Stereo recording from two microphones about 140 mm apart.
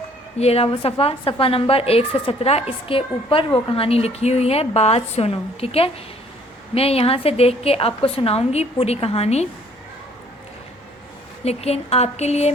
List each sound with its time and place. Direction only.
0.3 s a woman's voice: 45° left (ahead or behind)
11.4 s a woman's voice: 50° left (ahead or behind)